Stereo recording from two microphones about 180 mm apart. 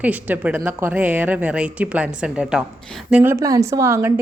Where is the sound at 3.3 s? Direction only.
15° right (ahead or behind).